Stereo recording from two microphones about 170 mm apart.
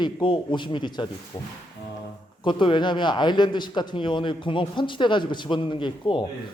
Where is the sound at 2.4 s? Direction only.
30° left (ahead or behind).